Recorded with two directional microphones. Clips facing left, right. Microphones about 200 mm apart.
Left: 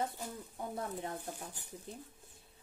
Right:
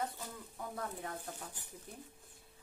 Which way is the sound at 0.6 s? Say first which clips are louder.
Left 3 dB; 25° left (ahead or behind).